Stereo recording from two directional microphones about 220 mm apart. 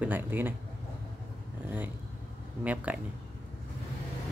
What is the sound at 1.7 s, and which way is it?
Speech, 10° right (ahead or behind).